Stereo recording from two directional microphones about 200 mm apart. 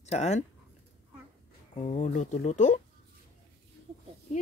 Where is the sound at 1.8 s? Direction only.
35° left (ahead or behind).